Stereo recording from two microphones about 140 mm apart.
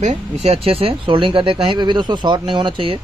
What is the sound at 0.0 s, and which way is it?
Speech, 55° right (ahead or behind).